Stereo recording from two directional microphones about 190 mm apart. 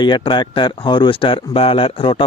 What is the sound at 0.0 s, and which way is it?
A man's voice, 25° left (ahead or behind).